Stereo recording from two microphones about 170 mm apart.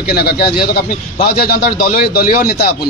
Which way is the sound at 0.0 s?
65° left (ahead or behind).